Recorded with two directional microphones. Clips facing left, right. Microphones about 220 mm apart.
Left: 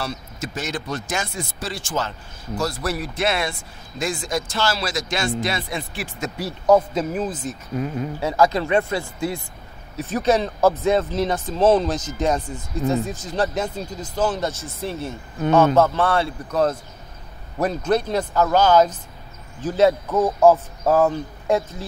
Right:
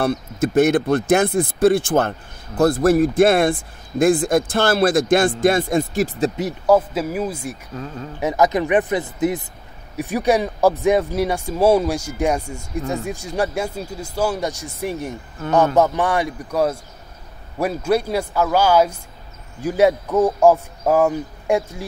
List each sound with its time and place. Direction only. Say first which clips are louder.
0.0 s speech: right 10 dB; 55° right (ahead or behind); by 6.3 s 35° right (ahead or behind)
6.6 s speech: even; 5° right (ahead or behind)
7.7 s speech: left 5 dB; 15° left (ahead or behind)
8.2 s speech: right 2 dB; 20° right (ahead or behind)